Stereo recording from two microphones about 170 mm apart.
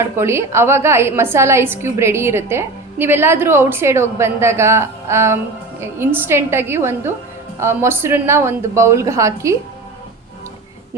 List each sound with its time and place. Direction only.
0.2 s a woman's voice: 15° right (ahead or behind)